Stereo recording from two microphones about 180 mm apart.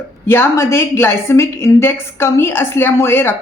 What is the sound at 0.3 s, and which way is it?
A woman's voice, 15° left (ahead or behind).